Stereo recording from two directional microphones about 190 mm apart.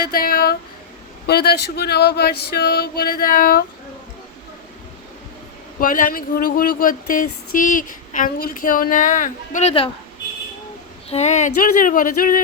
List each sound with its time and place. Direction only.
0.0 s speech: 50° left (ahead or behind)
1.3 s a sound: 55° left (ahead or behind)
5.8 s speech: 45° left (ahead or behind)
11.1 s speech: 35° left (ahead or behind)